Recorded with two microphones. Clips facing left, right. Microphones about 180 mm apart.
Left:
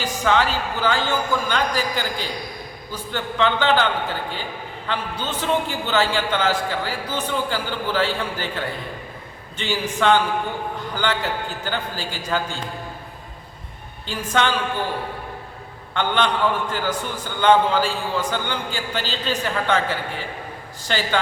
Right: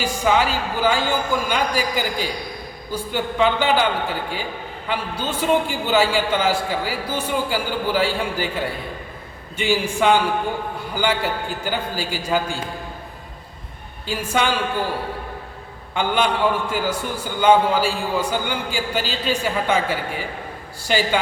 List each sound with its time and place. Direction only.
0.0 s a man's voice: 10° right (ahead or behind)
4.9 s a man's voice: 10° right (ahead or behind)
14.1 s a man's voice: 10° right (ahead or behind)
16.0 s a man's voice: 10° right (ahead or behind)